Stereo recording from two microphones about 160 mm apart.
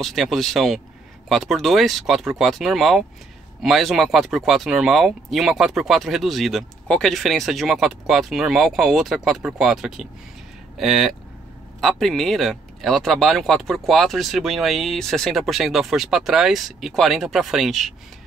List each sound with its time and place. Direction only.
0.0 s speech: centre (ahead or behind)